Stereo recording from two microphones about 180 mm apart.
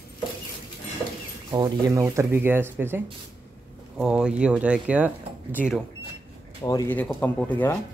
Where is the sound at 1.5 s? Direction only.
20° right (ahead or behind).